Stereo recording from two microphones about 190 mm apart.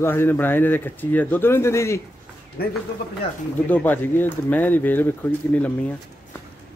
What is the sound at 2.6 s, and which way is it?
Speech, 55° left (ahead or behind).